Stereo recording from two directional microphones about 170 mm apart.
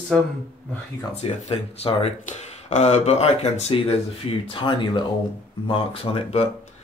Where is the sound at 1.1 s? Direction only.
40° left (ahead or behind).